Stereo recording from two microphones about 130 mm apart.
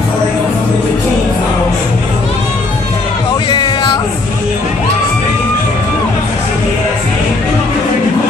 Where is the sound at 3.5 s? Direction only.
35° left (ahead or behind).